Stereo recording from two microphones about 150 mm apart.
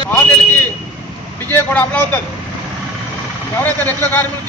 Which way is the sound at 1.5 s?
10° left (ahead or behind).